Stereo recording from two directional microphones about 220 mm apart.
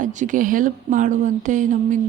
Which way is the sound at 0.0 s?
35° right (ahead or behind).